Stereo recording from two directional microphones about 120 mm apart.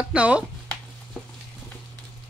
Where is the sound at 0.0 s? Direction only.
10° right (ahead or behind).